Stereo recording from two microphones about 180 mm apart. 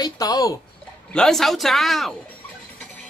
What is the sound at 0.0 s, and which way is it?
Speech, 20° left (ahead or behind).